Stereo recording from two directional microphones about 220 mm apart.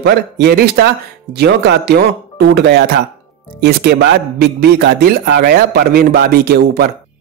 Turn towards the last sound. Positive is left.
turn(degrees=-45)  # may be behind; listen again after turning